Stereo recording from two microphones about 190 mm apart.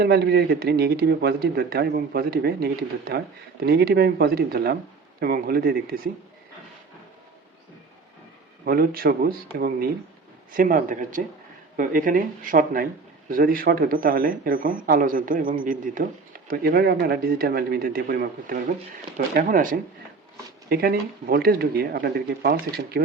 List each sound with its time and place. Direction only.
0.0 s speech: 60° right (ahead or behind)
8.6 s speech: 50° right (ahead or behind)